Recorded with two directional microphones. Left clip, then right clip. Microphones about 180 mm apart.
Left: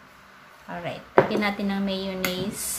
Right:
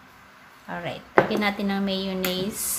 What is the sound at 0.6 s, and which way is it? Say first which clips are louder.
Dishes: right 1 dB; 20° right (ahead or behind).